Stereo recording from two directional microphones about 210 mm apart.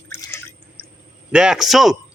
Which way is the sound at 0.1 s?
10° left (ahead or behind).